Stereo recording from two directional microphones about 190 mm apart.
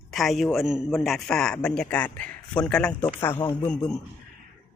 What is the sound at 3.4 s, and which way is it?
Speech, 20° left (ahead or behind).